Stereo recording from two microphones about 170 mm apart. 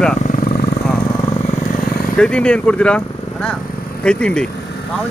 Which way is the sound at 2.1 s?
5° left (ahead or behind).